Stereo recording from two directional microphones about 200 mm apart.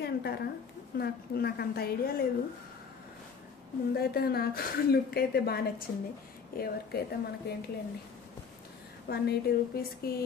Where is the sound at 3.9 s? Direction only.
50° left (ahead or behind).